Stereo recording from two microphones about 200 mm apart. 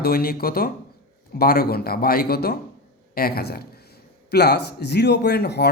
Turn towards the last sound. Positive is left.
turn(degrees=55)  # may be behind; listen again after turning